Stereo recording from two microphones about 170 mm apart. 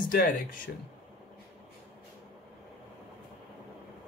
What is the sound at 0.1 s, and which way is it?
Speech, 55° left (ahead or behind).